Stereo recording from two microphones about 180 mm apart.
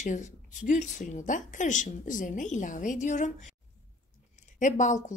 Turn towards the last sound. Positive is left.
turn(degrees=45)  # may be behind; listen again after turning